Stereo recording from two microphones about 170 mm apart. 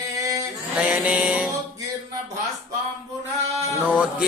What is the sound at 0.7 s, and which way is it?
Music, 10° right (ahead or behind).